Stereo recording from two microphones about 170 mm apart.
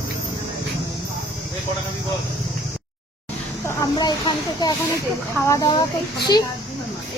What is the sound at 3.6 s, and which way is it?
Speech, 25° left (ahead or behind).